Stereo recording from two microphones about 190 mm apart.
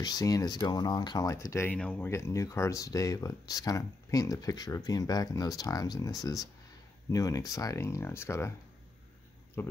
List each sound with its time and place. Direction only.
0.0 s speech: 20° left (ahead or behind)
9.6 s speech: 10° left (ahead or behind)